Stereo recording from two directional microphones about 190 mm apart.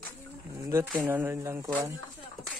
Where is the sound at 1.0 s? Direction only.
10° right (ahead or behind).